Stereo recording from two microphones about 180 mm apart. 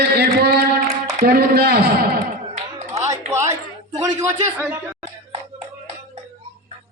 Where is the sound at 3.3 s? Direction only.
15° right (ahead or behind).